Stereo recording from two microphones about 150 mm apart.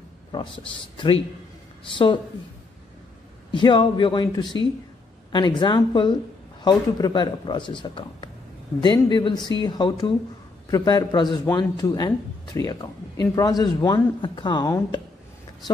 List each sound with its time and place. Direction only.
0.9 s speech: 35° left (ahead or behind)
3.5 s speech: 30° left (ahead or behind)